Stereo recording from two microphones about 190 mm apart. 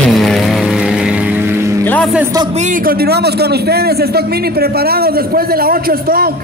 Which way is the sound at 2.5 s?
40° right (ahead or behind).